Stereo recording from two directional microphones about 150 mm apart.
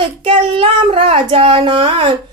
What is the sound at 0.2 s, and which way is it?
Speech, 35° right (ahead or behind).